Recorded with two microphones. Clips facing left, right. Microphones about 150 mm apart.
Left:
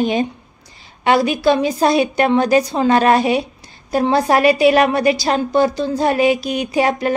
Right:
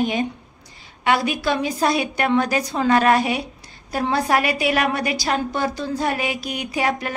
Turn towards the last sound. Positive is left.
turn(degrees=30)  # may be behind; listen again after turning